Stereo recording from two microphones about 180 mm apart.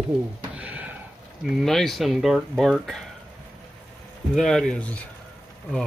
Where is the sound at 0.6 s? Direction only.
10° right (ahead or behind).